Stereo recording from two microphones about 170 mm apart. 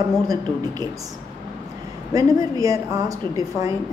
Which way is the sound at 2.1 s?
20° right (ahead or behind).